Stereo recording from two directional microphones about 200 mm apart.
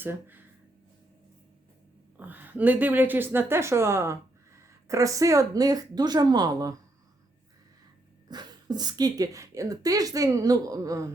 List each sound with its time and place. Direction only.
0.0 s speech: 10° right (ahead or behind)
2.1 s speech: 10° right (ahead or behind)
8.3 s speech: 20° right (ahead or behind)